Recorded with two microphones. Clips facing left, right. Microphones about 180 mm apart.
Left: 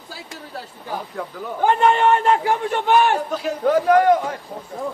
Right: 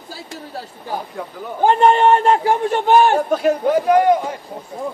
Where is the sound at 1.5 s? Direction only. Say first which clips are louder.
Right 3 dB; 35° right (ahead or behind).